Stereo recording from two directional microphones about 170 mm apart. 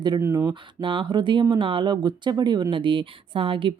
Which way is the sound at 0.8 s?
30° right (ahead or behind).